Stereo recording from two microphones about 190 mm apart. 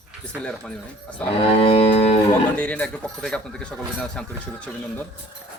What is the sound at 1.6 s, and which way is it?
Music, 30° left (ahead or behind).